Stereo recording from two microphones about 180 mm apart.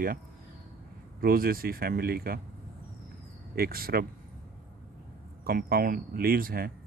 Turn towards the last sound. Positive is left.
turn(degrees=-55)  # may be behind; listen again after turning